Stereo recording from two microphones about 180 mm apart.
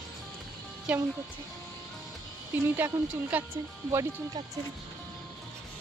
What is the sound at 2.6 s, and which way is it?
Speech, 10° right (ahead or behind).